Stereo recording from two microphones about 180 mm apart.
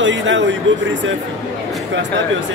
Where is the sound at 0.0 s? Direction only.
90° right.